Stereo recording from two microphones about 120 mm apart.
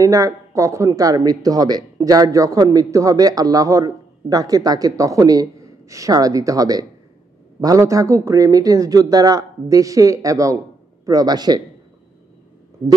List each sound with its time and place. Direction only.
0.0 s speech: 30° right (ahead or behind)